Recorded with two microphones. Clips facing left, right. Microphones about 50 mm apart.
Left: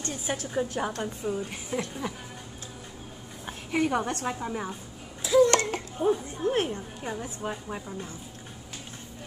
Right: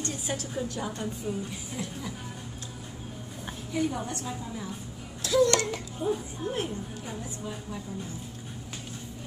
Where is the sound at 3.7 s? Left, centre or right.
Left.